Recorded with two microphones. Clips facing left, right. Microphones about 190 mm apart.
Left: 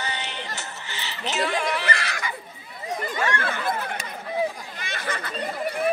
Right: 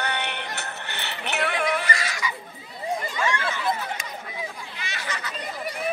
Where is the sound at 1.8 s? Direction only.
60° left (ahead or behind).